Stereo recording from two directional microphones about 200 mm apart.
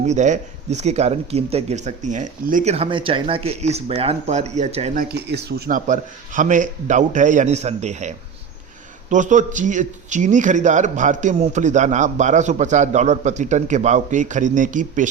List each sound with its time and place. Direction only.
0.0 s speech: 35° right (ahead or behind)
4.9 s speech: 55° right (ahead or behind)